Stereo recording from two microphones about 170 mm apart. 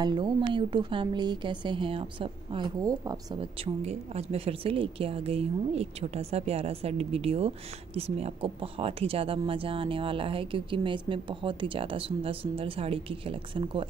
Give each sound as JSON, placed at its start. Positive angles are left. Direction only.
{"t": 0.0, "sound": "a woman's voice", "side_deg": -25}
{"t": 3.3, "sound": "a woman's voice", "side_deg": -35}